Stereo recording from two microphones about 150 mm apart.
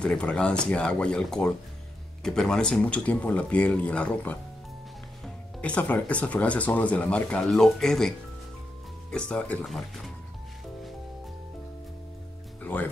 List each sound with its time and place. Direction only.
0.0 s speech: 5° left (ahead or behind)
9.1 s speech: 5° left (ahead or behind)